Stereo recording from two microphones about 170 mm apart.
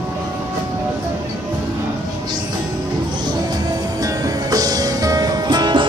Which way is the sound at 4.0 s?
20° right (ahead or behind).